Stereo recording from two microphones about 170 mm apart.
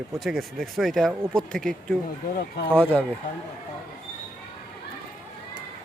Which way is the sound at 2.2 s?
65° left (ahead or behind).